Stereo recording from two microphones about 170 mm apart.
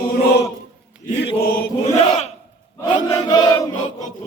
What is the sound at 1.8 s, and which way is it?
Chant, 40° left (ahead or behind).